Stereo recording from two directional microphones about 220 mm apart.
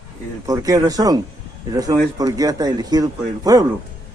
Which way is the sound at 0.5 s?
15° right (ahead or behind).